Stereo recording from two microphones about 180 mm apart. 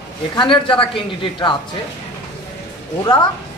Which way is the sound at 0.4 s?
30° left (ahead or behind).